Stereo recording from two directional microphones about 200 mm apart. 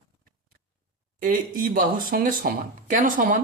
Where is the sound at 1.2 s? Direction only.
40° right (ahead or behind).